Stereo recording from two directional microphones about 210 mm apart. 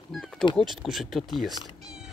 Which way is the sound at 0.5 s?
Centre (ahead or behind).